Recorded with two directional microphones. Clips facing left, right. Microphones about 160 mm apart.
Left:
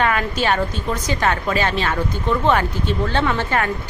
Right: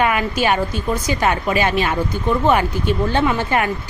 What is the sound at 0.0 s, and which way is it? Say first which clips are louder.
Speech: right 2 dB; 15° right (ahead or behind).